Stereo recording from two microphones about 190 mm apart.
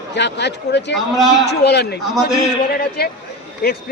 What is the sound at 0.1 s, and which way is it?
Speech, 65° left (ahead or behind).